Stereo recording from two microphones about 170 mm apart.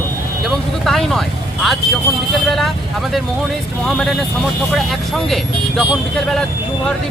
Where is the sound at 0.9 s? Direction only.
Centre (ahead or behind).